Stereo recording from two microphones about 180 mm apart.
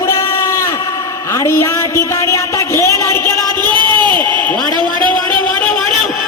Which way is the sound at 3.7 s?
25° right (ahead or behind).